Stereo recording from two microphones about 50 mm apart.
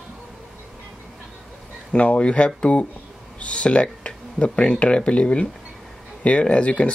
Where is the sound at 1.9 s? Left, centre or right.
Centre.